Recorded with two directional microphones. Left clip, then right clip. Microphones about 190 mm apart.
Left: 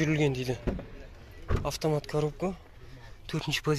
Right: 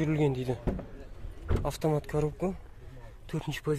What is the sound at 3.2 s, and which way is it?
Speech, 5° right (ahead or behind).